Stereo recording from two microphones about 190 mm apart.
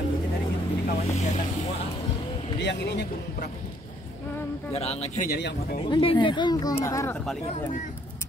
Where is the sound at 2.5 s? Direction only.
65° left (ahead or behind).